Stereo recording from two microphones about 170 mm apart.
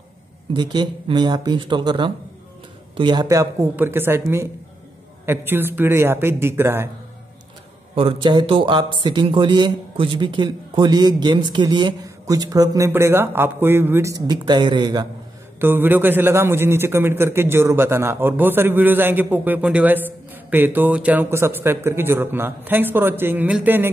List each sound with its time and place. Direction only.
0.5 s a man's voice: 25° right (ahead or behind)
7.9 s speech: 35° right (ahead or behind)
15.6 s a man's voice: 10° right (ahead or behind)